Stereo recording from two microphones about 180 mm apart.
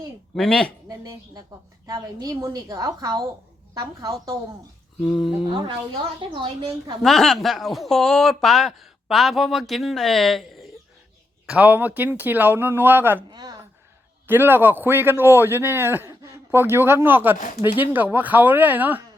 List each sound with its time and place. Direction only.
0.3 s speech: 5° left (ahead or behind)
0.9 s a woman's voice: 20° right (ahead or behind)
5.0 s speech: centre (ahead or behind)
5.5 s a woman's voice: 25° right (ahead or behind)
7.0 s speech: centre (ahead or behind)
13.3 s speech: 20° right (ahead or behind)
14.3 s speech: 10° right (ahead or behind)